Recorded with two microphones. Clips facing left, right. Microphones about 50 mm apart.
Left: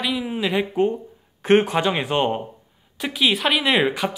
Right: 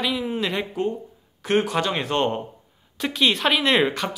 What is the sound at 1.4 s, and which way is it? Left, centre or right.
Speech, left.